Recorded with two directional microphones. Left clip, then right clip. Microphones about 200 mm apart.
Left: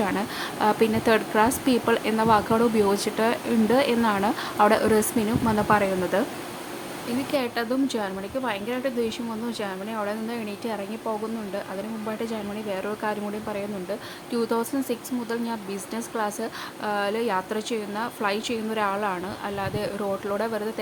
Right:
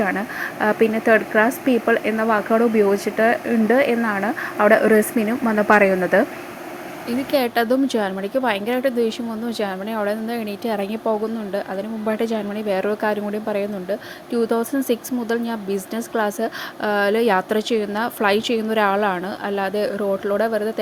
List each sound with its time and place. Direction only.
0.0 s speech: 10° right (ahead or behind)
7.3 s speech: 25° right (ahead or behind)